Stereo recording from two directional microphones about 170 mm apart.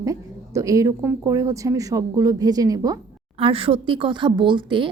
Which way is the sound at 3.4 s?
35° right (ahead or behind).